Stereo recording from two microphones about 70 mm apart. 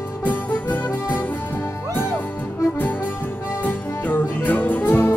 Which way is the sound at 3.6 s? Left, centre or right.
Left.